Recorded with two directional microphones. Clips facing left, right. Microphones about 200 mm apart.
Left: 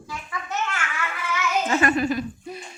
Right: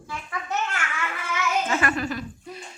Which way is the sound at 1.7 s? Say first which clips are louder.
Left 4 dB; 25° left (ahead or behind).